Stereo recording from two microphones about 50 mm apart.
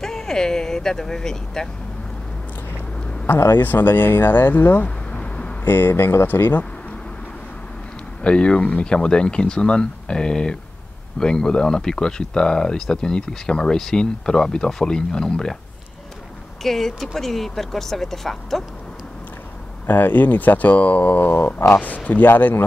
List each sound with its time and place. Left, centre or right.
0.0 s speech: centre
3.3 s speech: left
4.8 s a sound: left
5.7 s speech: left
8.2 s speech: left
16.6 s speech: centre
19.9 s speech: left